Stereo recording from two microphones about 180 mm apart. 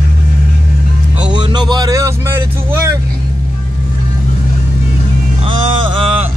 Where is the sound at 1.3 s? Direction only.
25° right (ahead or behind).